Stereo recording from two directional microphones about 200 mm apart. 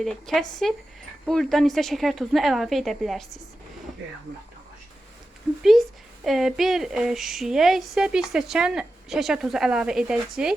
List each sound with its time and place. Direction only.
0.0 s speech: centre (ahead or behind)
5.6 s speech: centre (ahead or behind)